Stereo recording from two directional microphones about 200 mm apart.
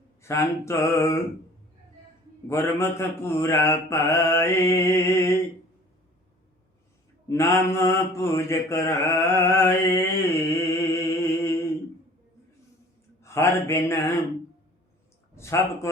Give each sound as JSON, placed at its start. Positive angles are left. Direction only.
{"t": 0.2, "sound": "mantra", "side_deg": 15}
{"t": 2.5, "sound": "mantra", "side_deg": 15}
{"t": 7.3, "sound": "mantra", "side_deg": 15}
{"t": 13.2, "sound": "mantra", "side_deg": 15}
{"t": 15.4, "sound": "speech", "side_deg": 15}